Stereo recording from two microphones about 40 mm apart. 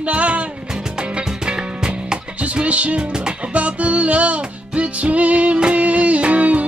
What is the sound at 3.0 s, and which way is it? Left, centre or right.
Music, right.